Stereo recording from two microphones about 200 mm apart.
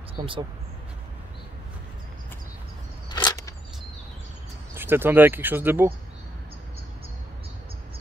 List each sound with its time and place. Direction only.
0.2 s speech: 25° right (ahead or behind)
3.1 s a sound: 20° left (ahead or behind)
4.7 s speech: 10° right (ahead or behind)